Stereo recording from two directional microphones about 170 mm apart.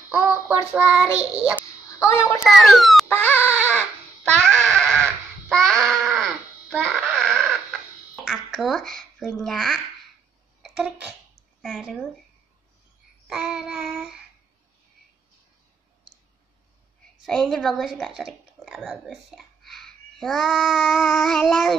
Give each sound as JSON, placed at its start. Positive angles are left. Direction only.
{"t": 0.1, "sound": "child singing", "side_deg": -5}
{"t": 2.0, "sound": "a woman's voice", "side_deg": 15}
{"t": 2.4, "sound": "child singing", "side_deg": 0}
{"t": 3.1, "sound": "baby cry", "side_deg": 10}
{"t": 3.3, "sound": "baby cry", "side_deg": -10}
{"t": 3.7, "sound": "a sound", "side_deg": 5}
{"t": 6.8, "sound": "crying", "side_deg": 0}
{"t": 8.3, "sound": "speech", "side_deg": 0}
{"t": 11.6, "sound": "child singing", "side_deg": 0}
{"t": 13.3, "sound": "child singing", "side_deg": -5}
{"t": 17.3, "sound": "a woman's voice", "side_deg": 0}